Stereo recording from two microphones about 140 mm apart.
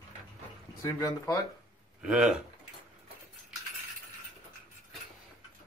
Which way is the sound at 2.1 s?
5° right (ahead or behind).